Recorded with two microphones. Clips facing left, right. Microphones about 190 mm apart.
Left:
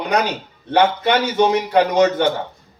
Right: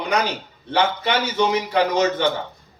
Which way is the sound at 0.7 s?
55° left (ahead or behind).